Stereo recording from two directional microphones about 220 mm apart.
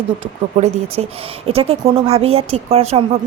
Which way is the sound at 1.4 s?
25° right (ahead or behind).